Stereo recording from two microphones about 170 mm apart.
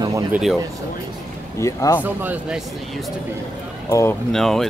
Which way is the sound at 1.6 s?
20° left (ahead or behind).